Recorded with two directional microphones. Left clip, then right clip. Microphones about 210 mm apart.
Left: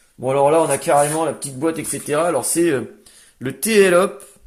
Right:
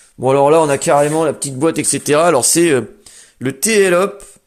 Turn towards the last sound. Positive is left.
turn(degrees=-30)  # may be behind; listen again after turning